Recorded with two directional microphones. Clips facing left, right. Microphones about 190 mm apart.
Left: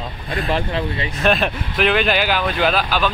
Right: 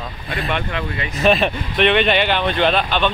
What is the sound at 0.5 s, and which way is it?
Speech, 30° left (ahead or behind).